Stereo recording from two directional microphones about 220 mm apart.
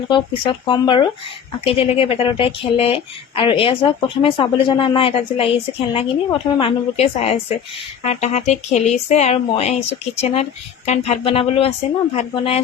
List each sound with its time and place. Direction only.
0.1 s a woman's voice: 20° left (ahead or behind)